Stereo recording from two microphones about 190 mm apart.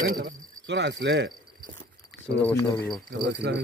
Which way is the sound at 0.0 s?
55° right (ahead or behind).